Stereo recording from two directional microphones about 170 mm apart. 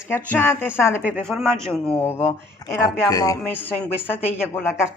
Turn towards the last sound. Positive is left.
turn(degrees=15)  # may be behind; listen again after turning